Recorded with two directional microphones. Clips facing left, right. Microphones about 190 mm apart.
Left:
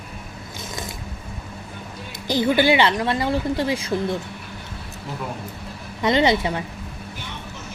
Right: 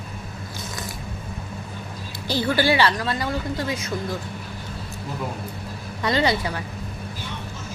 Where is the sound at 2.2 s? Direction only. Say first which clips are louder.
Left 3 dB; 20° left (ahead or behind).